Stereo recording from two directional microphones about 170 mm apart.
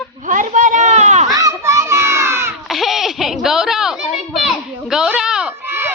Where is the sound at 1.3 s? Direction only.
20° right (ahead or behind).